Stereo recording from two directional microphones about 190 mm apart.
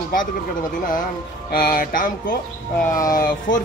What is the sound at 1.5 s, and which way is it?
Speech, 50° left (ahead or behind).